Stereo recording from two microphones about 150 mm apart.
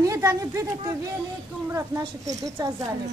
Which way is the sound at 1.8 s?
20° right (ahead or behind).